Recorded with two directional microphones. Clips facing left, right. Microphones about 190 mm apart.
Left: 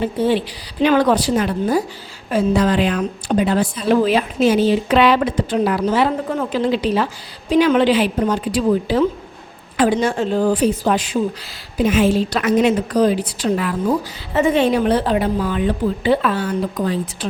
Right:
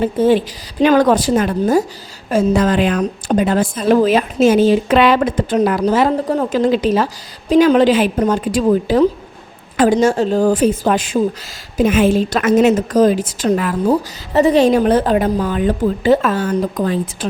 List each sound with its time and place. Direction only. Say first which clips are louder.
0.0 s a woman's voice: right 4 dB; 45° right (ahead or behind)